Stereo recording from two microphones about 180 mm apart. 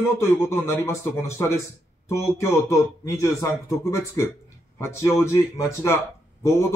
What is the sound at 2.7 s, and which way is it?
A man's voice, 15° left (ahead or behind).